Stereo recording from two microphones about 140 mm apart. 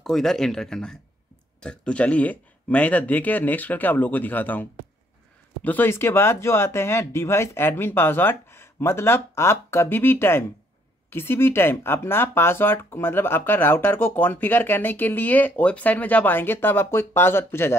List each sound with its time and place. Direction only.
0.0 s speech: 5° left (ahead or behind)